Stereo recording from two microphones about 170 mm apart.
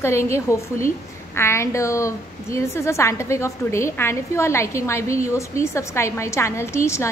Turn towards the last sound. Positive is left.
turn(degrees=15)  # may be behind; listen again after turning